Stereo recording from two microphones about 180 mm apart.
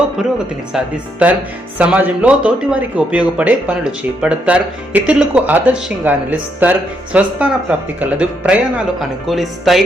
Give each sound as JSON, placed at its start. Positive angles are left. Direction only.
{"t": 0.2, "sound": "speech", "side_deg": -5}